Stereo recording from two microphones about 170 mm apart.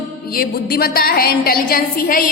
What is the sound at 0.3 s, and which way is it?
A woman's voice, 60° left (ahead or behind).